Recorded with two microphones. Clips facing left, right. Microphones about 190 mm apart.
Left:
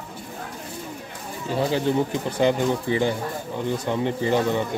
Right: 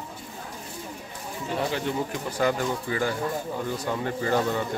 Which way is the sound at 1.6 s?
30° left (ahead or behind).